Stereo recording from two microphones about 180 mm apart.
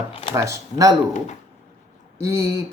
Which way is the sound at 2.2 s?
15° right (ahead or behind).